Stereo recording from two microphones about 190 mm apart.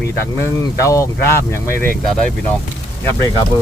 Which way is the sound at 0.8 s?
15° left (ahead or behind).